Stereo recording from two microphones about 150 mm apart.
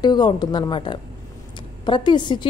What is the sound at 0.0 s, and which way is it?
A woman's voice, 30° left (ahead or behind).